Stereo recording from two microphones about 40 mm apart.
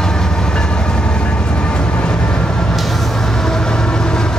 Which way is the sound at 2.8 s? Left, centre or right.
Centre.